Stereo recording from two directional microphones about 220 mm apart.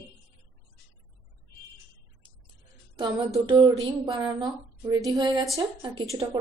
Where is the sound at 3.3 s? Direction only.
20° right (ahead or behind).